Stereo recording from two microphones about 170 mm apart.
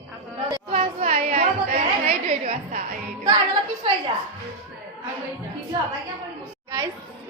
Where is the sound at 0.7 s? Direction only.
35° right (ahead or behind).